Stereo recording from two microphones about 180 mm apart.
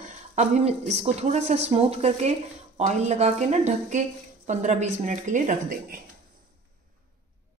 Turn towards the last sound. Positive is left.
turn(degrees=-45)  # may be behind; listen again after turning